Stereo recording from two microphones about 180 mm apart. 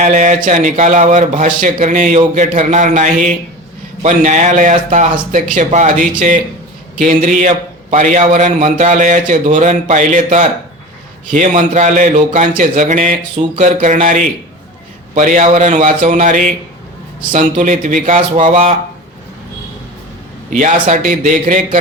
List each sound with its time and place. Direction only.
0.0 s a man's voice: 40° right (ahead or behind)
11.3 s a man's voice: 45° right (ahead or behind)
20.5 s a man's voice: 45° right (ahead or behind)